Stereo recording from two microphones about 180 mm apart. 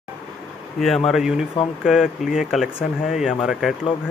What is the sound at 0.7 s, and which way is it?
Speech, centre (ahead or behind).